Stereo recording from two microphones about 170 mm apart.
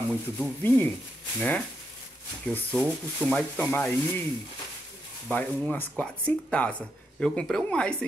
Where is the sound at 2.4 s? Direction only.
5° left (ahead or behind).